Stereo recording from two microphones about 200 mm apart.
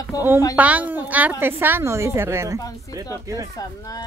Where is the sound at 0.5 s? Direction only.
5° right (ahead or behind).